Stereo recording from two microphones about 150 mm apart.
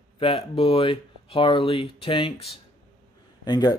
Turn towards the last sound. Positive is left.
turn(degrees=25)  # may be behind; listen again after turning